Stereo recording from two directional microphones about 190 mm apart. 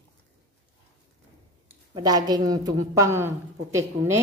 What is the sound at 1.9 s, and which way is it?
A woman's voice, 20° right (ahead or behind).